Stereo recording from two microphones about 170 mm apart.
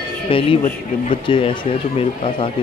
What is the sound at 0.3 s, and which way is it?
Speech, 30° left (ahead or behind).